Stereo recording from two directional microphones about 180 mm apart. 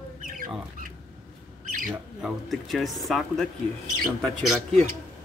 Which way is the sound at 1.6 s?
50° right (ahead or behind).